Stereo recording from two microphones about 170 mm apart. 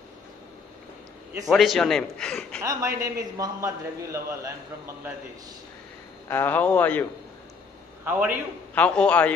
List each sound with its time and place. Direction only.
1.5 s a man's voice: centre (ahead or behind)
2.6 s a man's voice: 15° right (ahead or behind)
6.2 s a man's voice: 10° left (ahead or behind)
8.0 s a man's voice: 10° right (ahead or behind)
8.7 s a man's voice: 5° left (ahead or behind)